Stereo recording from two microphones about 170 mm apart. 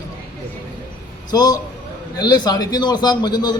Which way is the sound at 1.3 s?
25° left (ahead or behind).